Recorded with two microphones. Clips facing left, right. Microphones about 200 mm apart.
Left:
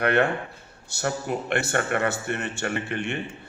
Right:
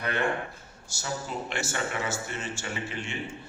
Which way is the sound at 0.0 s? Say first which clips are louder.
Left 7 dB; 65° left (ahead or behind).